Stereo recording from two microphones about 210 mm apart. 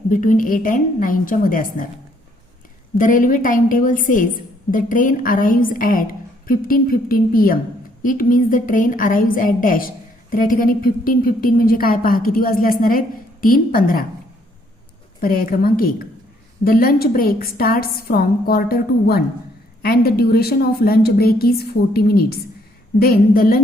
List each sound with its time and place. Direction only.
0.1 s a woman's voice: 40° left (ahead or behind)
3.0 s a woman's voice: 40° left (ahead or behind)
15.2 s a woman's voice: 45° left (ahead or behind)